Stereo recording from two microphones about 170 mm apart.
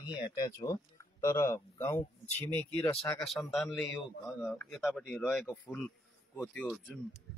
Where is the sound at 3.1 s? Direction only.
Centre (ahead or behind).